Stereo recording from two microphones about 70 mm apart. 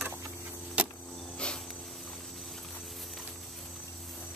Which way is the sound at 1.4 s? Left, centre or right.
Centre.